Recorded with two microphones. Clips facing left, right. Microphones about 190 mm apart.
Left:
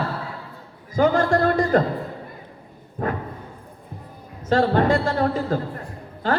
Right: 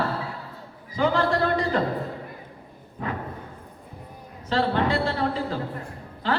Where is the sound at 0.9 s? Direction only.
45° left (ahead or behind).